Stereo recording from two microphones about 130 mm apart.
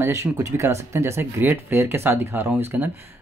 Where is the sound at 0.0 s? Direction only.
20° right (ahead or behind).